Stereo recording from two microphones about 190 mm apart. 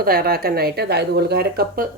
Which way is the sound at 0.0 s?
50° right (ahead or behind).